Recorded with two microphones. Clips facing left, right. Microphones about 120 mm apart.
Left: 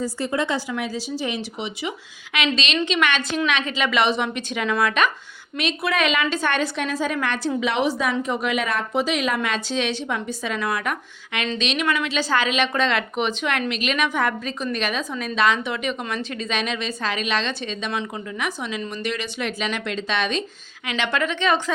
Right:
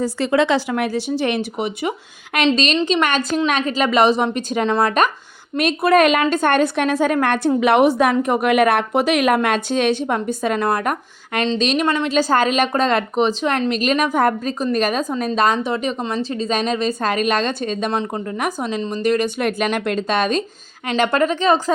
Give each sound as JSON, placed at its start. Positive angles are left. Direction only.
{"t": 0.0, "sound": "a woman's voice", "side_deg": -80}